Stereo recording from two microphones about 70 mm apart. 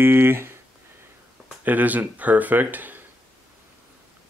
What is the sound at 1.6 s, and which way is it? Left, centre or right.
Speech, right.